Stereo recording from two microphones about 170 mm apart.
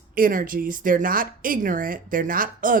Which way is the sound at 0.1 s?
55° right (ahead or behind).